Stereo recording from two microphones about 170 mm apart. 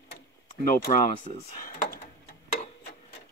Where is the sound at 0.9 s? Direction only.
40° left (ahead or behind).